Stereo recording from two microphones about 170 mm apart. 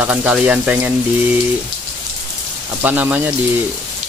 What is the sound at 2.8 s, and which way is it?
Speech, 10° right (ahead or behind).